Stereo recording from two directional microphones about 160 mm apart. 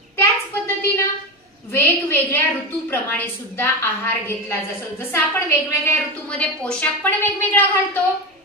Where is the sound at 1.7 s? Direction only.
10° left (ahead or behind).